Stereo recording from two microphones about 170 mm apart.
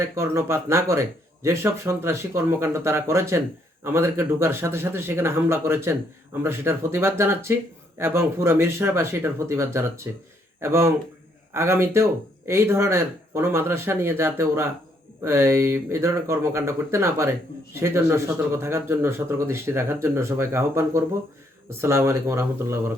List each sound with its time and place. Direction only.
0.0 s speech: 15° right (ahead or behind)